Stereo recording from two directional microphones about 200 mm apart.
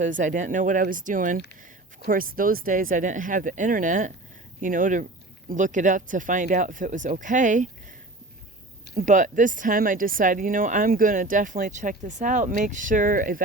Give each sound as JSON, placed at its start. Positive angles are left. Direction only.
{"t": 0.0, "sound": "speech", "side_deg": -40}
{"t": 9.0, "sound": "speech", "side_deg": -40}